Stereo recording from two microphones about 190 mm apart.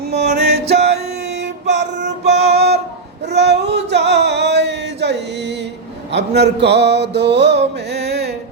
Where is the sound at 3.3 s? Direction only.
60° right (ahead or behind).